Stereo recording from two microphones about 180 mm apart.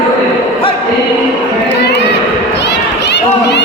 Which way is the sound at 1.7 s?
70° left (ahead or behind).